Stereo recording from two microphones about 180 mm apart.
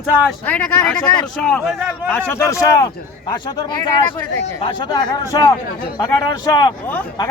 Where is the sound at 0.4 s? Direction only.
10° left (ahead or behind).